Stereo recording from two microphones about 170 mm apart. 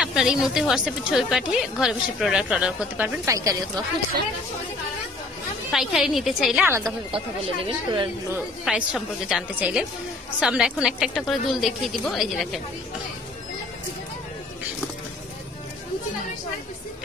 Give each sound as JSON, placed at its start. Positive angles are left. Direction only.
{"t": 0.0, "sound": "a woman's voice", "side_deg": -5}
{"t": 3.3, "sound": "a woman's voice", "side_deg": -20}
{"t": 5.7, "sound": "a woman's voice", "side_deg": 0}
{"t": 6.6, "sound": "a woman's voice", "side_deg": -15}
{"t": 7.2, "sound": "a woman's voice", "side_deg": -30}
{"t": 8.6, "sound": "a woman's voice", "side_deg": -5}